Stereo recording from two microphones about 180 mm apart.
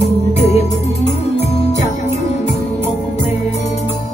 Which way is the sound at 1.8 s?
35° left (ahead or behind).